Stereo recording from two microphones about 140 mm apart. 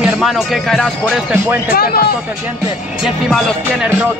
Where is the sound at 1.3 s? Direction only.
15° right (ahead or behind).